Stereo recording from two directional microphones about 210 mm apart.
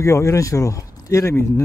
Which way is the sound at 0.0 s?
15° left (ahead or behind).